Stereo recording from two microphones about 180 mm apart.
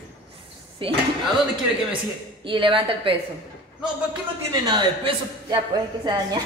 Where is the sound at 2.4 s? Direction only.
25° right (ahead or behind).